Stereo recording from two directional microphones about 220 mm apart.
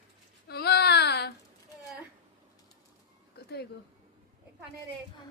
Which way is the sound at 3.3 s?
50° left (ahead or behind).